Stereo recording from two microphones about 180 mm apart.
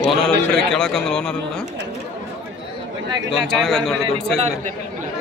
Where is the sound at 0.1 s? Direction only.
5° left (ahead or behind).